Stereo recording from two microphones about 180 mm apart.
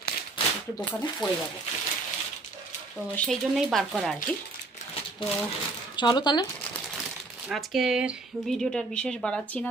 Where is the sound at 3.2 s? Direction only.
Centre (ahead or behind).